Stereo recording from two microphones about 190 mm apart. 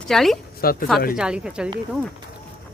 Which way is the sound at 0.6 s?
50° left (ahead or behind).